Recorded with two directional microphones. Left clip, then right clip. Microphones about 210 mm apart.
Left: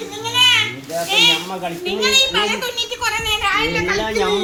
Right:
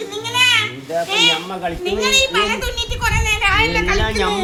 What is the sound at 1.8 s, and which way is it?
A child's voice, 20° right (ahead or behind).